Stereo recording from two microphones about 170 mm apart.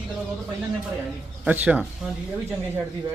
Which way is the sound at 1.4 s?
10° right (ahead or behind).